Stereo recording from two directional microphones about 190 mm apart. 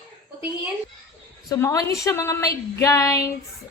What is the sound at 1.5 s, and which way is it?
A woman's voice, 15° left (ahead or behind).